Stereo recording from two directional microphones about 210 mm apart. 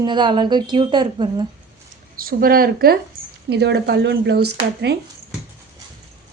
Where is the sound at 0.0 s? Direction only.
20° right (ahead or behind).